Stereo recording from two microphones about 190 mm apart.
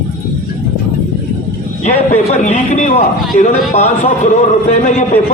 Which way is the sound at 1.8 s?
40° left (ahead or behind).